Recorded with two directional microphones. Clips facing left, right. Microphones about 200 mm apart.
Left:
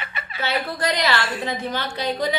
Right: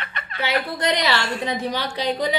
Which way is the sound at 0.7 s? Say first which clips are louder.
Left 1 dB; 20° right (ahead or behind).